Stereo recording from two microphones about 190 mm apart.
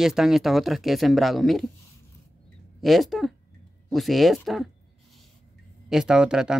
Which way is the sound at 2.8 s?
Centre (ahead or behind).